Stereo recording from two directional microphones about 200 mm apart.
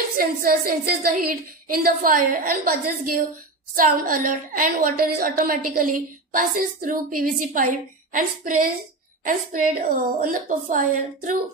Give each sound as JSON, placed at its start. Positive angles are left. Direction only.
{"t": 0.2, "sound": "a woman's voice", "side_deg": -45}